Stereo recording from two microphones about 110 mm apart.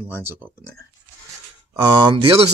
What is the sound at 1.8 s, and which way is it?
Speech, 40° right (ahead or behind).